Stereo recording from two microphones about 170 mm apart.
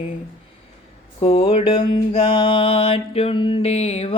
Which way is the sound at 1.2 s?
30° left (ahead or behind).